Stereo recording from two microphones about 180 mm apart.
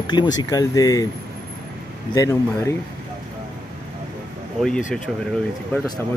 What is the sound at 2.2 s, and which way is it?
Speech, 15° left (ahead or behind).